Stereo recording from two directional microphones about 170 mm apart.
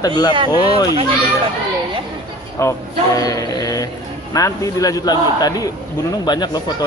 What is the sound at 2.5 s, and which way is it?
A man's voice, 20° left (ahead or behind).